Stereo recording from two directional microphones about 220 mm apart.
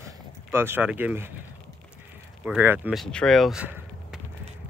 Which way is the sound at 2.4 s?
5° right (ahead or behind).